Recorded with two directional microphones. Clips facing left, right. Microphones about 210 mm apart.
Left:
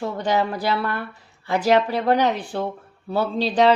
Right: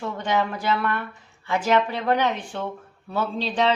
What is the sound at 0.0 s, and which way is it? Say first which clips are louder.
A woman's voice: left 3 dB; 35° left (ahead or behind).